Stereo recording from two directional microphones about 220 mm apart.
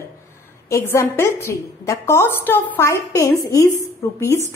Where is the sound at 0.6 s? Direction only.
15° left (ahead or behind).